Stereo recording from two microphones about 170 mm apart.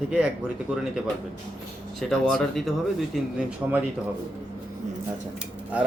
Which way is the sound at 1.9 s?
Centre (ahead or behind).